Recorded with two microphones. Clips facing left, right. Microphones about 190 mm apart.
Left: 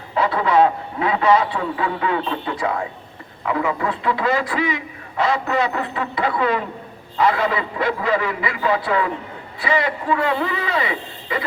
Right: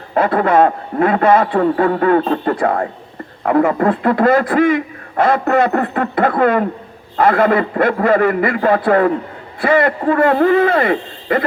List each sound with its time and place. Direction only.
0.1 s a man's voice: 55° right (ahead or behind)